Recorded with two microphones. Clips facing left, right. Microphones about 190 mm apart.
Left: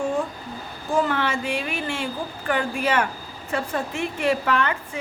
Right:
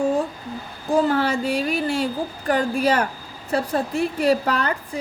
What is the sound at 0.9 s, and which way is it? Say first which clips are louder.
A woman's voice: right 4 dB; 35° right (ahead or behind).